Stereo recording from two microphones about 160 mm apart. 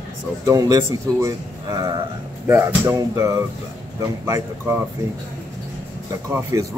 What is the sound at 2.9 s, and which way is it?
Speech, 20° right (ahead or behind).